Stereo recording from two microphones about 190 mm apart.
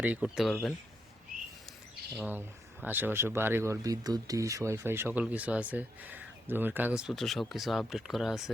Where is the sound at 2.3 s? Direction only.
10° right (ahead or behind).